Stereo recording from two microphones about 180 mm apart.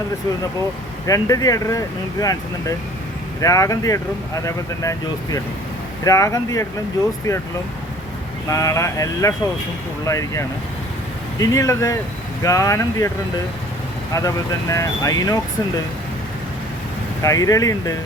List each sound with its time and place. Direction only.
1.0 s speech: 20° left (ahead or behind)
8.4 s speech: 15° left (ahead or behind)
14.1 s speech: 20° left (ahead or behind)
17.2 s speech: 20° left (ahead or behind)